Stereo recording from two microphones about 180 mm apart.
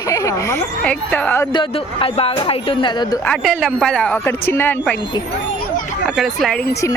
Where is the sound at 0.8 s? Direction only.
5° left (ahead or behind).